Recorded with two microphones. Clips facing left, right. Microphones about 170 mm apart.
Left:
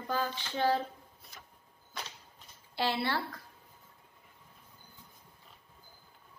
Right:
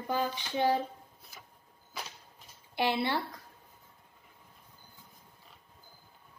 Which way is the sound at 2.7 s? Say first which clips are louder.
Right 2 dB; 15° right (ahead or behind).